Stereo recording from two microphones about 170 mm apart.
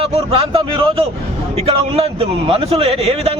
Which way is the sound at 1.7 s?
35° right (ahead or behind).